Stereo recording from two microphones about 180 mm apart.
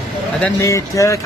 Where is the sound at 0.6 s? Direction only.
15° left (ahead or behind).